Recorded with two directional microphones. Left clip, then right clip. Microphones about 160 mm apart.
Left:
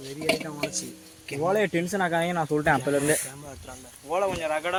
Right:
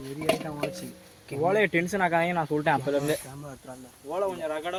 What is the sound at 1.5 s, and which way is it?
Speech, 50° left (ahead or behind).